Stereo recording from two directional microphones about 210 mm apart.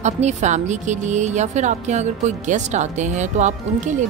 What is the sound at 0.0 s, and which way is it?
A woman's voice, 35° right (ahead or behind).